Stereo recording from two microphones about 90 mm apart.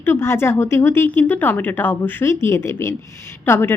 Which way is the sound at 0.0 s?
25° left (ahead or behind).